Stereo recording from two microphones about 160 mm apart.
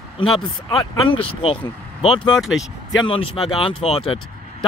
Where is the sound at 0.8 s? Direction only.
35° left (ahead or behind).